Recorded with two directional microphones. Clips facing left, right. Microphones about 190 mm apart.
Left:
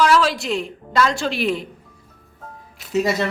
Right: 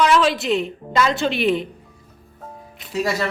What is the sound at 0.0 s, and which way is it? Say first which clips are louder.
Speech: even; centre (ahead or behind).